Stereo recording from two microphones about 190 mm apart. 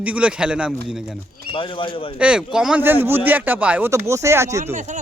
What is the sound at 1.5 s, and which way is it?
Speech, 25° left (ahead or behind).